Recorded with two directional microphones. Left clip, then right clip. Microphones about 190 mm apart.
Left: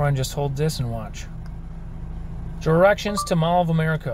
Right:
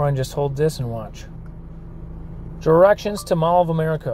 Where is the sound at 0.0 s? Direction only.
5° right (ahead or behind).